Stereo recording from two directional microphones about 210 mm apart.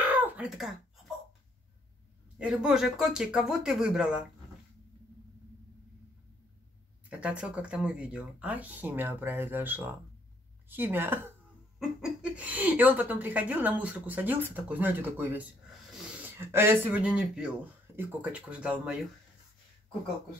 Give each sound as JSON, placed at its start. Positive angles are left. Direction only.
{"t": 0.0, "sound": "a sound", "side_deg": -10}
{"t": 2.3, "sound": "speech", "side_deg": -5}
{"t": 7.1, "sound": "speech", "side_deg": -5}